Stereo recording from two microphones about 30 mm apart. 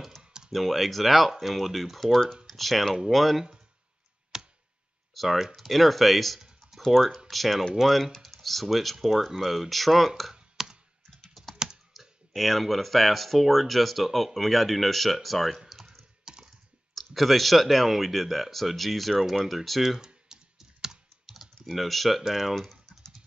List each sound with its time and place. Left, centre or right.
0.2 s computer keyboard: right
0.5 s speech: centre
4.3 s a sound: centre
5.1 s speech: centre
8.4 s computer keyboard: centre
8.6 s speech: centre
10.3 s clicking: centre
11.5 s computer keyboard: right
12.4 s speech: centre
16.3 s computer keyboard: right
16.9 s speech: centre
20.5 s computer keyboard: centre
21.3 s typing: centre
22.2 s speech: centre